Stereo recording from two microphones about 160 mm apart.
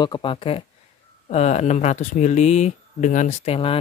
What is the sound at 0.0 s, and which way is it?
Speech, 30° left (ahead or behind).